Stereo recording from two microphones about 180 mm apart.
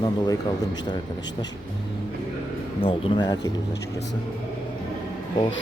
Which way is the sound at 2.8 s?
30° left (ahead or behind).